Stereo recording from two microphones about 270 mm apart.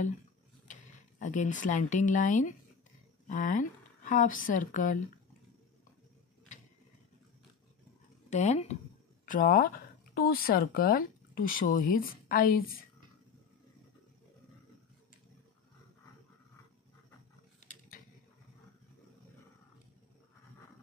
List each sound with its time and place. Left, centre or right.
1.2 s speech: left
8.3 s a woman's voice: left